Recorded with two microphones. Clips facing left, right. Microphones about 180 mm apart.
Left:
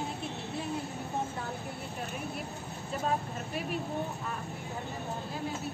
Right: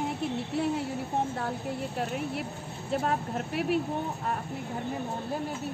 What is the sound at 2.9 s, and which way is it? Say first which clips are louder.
Speech: right 4 dB; 75° right (ahead or behind).